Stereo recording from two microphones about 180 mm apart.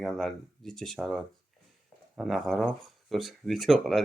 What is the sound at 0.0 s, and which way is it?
Speech, centre (ahead or behind).